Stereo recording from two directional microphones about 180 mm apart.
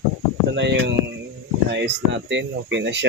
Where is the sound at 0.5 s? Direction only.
75° right (ahead or behind).